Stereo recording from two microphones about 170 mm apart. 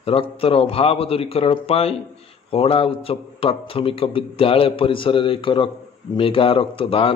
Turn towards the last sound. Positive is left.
turn(degrees=35)  # may be behind; listen again after turning